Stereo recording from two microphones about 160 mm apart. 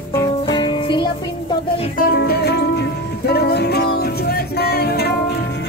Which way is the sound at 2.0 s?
75° left (ahead or behind).